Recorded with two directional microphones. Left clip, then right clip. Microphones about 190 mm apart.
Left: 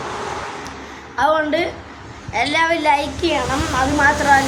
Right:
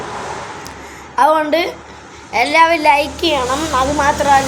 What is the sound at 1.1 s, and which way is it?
A woman's voice, 25° right (ahead or behind).